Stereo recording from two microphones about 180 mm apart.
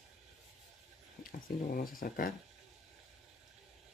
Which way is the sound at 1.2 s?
50° left (ahead or behind).